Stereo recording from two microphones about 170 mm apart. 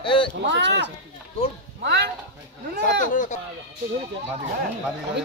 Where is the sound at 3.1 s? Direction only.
45° left (ahead or behind).